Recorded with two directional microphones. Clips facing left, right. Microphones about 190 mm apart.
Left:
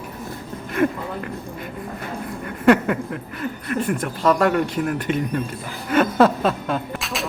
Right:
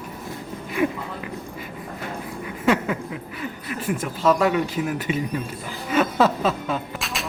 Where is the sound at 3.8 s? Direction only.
5° right (ahead or behind).